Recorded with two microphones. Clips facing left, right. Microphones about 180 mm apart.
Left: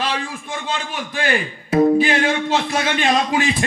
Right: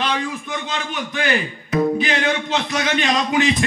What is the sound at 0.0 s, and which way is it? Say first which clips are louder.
A man's voice: right 1 dB; 30° left (ahead or behind).